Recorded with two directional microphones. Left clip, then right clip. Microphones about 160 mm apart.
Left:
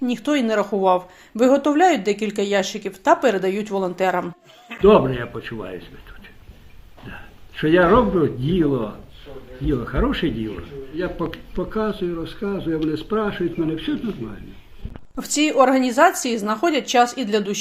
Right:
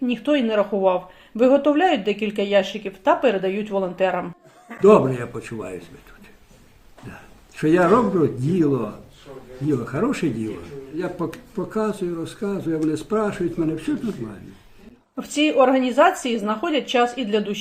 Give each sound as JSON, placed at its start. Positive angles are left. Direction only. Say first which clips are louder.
{"t": 0.0, "sound": "speech", "louder": "right 1 dB", "side_deg": 30}
{"t": 4.8, "sound": "speech", "louder": "even", "side_deg": -10}
{"t": 7.6, "sound": "speech", "louder": "left 2 dB", "side_deg": -15}
{"t": 9.6, "sound": "speech", "louder": "even", "side_deg": -10}
{"t": 15.1, "sound": "speech", "louder": "even", "side_deg": 35}